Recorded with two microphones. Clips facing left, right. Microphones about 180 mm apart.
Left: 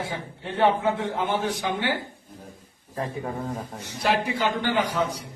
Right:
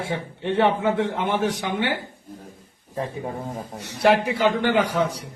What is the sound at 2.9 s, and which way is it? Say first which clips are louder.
Speech: right 1 dB; 20° right (ahead or behind).